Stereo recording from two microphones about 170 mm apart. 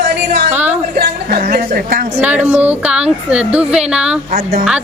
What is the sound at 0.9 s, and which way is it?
Speech, 65° right (ahead or behind).